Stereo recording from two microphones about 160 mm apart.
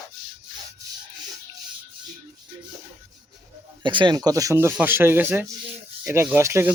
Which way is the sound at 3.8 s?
30° right (ahead or behind).